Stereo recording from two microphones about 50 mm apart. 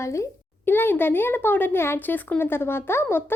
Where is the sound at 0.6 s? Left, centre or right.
Left.